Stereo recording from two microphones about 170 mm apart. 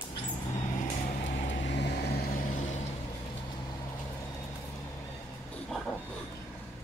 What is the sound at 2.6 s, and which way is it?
Vehicle, 40° left (ahead or behind).